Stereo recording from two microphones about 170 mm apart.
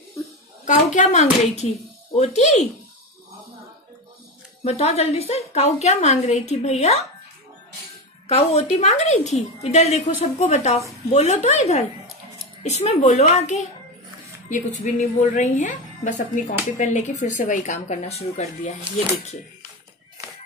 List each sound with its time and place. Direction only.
0.7 s a woman's voice: 45° left (ahead or behind)
4.6 s a woman's voice: 40° left (ahead or behind)
8.3 s a woman's voice: 40° left (ahead or behind)